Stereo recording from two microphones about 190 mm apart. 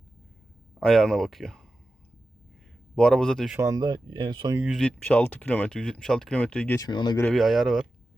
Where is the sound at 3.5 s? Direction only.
15° right (ahead or behind).